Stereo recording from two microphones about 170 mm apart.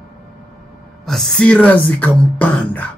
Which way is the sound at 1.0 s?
Centre (ahead or behind).